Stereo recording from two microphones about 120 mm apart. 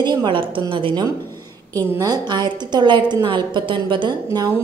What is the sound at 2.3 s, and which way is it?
A woman's voice, 35° right (ahead or behind).